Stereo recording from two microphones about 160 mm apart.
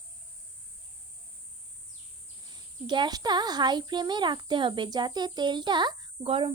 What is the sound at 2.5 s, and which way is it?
A child's voice, 30° right (ahead or behind).